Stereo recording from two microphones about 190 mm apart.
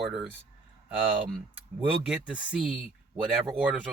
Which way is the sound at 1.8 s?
5° right (ahead or behind).